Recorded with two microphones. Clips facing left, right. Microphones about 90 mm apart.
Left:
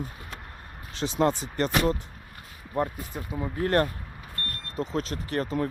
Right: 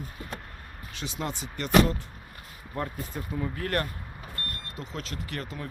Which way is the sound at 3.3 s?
25° left (ahead or behind).